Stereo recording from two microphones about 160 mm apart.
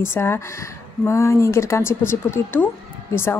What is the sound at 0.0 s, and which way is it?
Speech, 15° left (ahead or behind).